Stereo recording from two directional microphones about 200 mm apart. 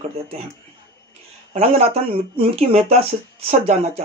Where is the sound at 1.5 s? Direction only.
30° right (ahead or behind).